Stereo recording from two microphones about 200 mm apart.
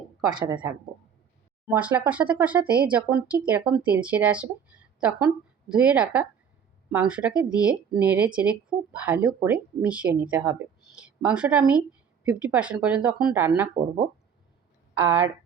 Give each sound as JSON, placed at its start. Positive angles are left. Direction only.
{"t": 0.3, "sound": "speech", "side_deg": -20}
{"t": 1.6, "sound": "speech", "side_deg": -10}
{"t": 13.8, "sound": "speech", "side_deg": -30}